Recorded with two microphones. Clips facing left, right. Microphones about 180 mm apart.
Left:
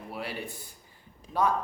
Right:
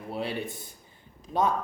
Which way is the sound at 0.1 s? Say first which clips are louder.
Right 5 dB; 25° right (ahead or behind).